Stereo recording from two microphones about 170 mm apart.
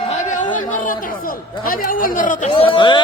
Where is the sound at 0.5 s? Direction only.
55° left (ahead or behind).